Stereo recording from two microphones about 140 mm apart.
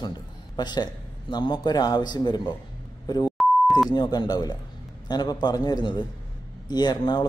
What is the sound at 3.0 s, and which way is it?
Beep, 30° left (ahead or behind).